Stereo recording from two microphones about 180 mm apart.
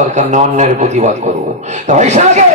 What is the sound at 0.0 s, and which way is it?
A man's voice, 40° right (ahead or behind).